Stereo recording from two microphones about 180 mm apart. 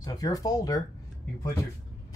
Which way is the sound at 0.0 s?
20° left (ahead or behind).